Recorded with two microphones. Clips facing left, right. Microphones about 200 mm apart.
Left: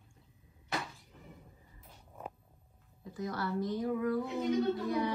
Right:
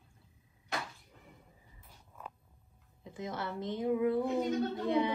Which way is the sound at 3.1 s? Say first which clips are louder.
Left 3 dB; 25° right (ahead or behind).